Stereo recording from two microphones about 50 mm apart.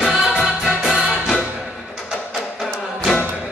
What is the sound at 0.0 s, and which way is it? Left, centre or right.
Music, centre.